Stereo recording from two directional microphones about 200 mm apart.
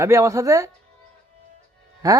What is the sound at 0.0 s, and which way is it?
Speech, 15° right (ahead or behind).